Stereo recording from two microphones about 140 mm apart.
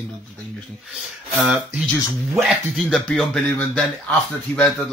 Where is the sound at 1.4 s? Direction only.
5° right (ahead or behind).